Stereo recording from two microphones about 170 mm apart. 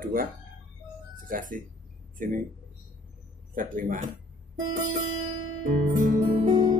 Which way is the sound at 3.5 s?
50° right (ahead or behind).